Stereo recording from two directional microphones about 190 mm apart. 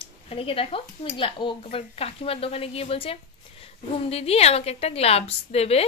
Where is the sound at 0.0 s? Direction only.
30° left (ahead or behind).